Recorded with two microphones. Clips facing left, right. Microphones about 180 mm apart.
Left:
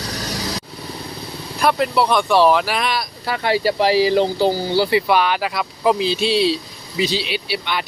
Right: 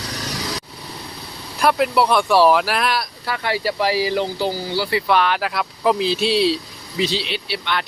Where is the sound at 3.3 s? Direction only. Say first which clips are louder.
Left 4 dB; 25° left (ahead or behind).